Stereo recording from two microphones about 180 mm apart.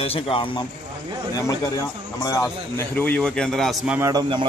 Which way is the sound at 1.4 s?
15° left (ahead or behind).